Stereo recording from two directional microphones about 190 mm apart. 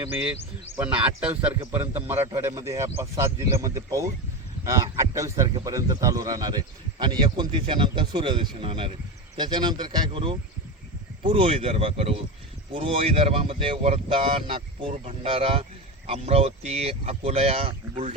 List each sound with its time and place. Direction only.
0.8 s a man's voice: 5° right (ahead or behind); by 18.1 s 30° right (ahead or behind)